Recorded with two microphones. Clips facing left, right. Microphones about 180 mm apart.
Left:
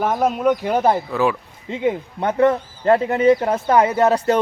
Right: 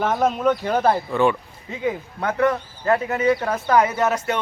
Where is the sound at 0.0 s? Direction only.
10° left (ahead or behind).